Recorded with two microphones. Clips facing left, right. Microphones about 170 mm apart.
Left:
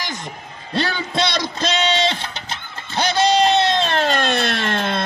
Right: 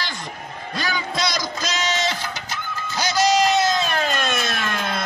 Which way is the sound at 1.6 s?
30° left (ahead or behind).